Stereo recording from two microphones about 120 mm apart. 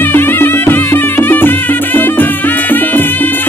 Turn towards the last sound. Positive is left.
turn(degrees=15)  # may be behind; listen again after turning